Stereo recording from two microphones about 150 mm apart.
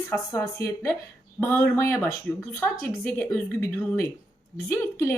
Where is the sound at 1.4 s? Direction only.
15° left (ahead or behind).